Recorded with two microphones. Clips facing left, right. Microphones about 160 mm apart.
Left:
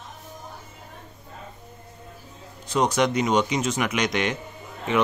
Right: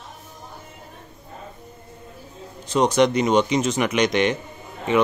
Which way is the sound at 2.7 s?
5° left (ahead or behind).